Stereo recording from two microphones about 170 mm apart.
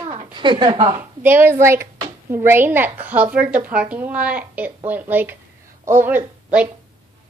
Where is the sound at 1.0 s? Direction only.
10° right (ahead or behind).